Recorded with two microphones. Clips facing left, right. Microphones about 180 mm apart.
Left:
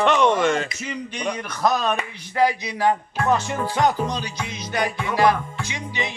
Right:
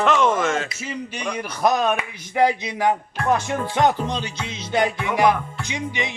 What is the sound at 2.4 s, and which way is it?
Music, 20° right (ahead or behind).